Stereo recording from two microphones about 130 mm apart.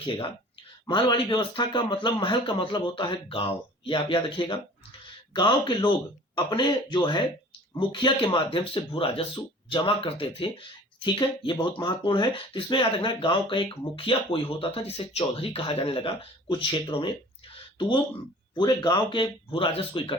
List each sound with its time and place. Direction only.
0.9 s a man's voice: 40° left (ahead or behind)
17.5 s a sound: 40° left (ahead or behind)
18.5 s a man's voice: 35° left (ahead or behind)